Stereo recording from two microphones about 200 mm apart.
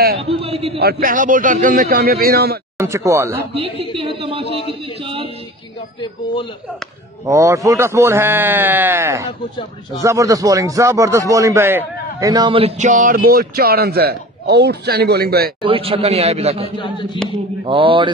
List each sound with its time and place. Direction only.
0.2 s a man's voice: 30° right (ahead or behind)
0.7 s a man's voice: 50° right (ahead or behind)
2.8 s a man's voice: 15° right (ahead or behind)
3.5 s a man's voice: 30° right (ahead or behind)
5.0 s a sound: 30° right (ahead or behind)
7.2 s a man's voice: 15° right (ahead or behind); by 15.5 s 50° right (ahead or behind)
15.6 s a man's voice: 30° right (ahead or behind)
16.7 s a sound: 25° left (ahead or behind)
17.6 s a man's voice: 25° right (ahead or behind)